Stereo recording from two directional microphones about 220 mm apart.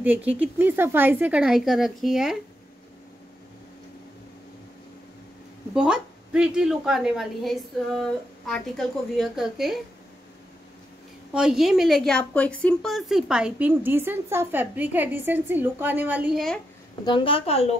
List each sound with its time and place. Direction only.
0.0 s a woman's voice: 5° right (ahead or behind)
5.8 s a woman's voice: 5° right (ahead or behind)
11.3 s a woman's voice: 5° right (ahead or behind)
17.0 s a woman's voice: 20° left (ahead or behind)